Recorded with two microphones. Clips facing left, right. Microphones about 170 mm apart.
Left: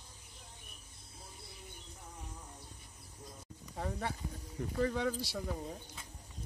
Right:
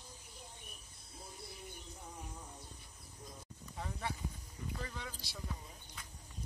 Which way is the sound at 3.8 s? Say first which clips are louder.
Left 4 dB; 45° left (ahead or behind).